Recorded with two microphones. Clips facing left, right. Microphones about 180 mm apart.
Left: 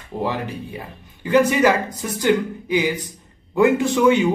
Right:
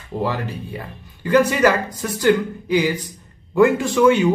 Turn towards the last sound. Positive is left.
turn(degrees=20)  # may be behind; listen again after turning